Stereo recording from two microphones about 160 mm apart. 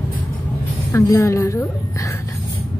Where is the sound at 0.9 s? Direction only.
20° left (ahead or behind).